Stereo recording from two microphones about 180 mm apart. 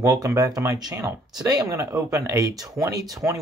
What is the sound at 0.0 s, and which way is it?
Speech, 15° right (ahead or behind).